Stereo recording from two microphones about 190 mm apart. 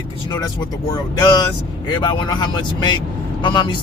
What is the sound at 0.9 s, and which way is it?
Speech, 20° left (ahead or behind).